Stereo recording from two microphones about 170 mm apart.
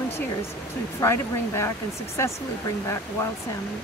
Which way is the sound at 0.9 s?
15° left (ahead or behind).